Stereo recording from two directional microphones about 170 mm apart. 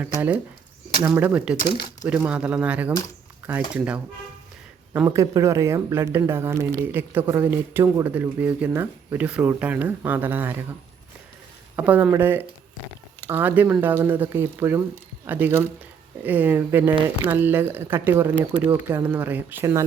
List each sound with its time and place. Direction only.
0.0 s speech: 10° right (ahead or behind)
5.0 s speech: 20° right (ahead or behind)
11.8 s speech: 10° right (ahead or behind)